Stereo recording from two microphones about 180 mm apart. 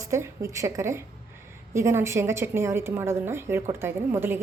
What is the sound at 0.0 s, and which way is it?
A woman's voice, 15° right (ahead or behind).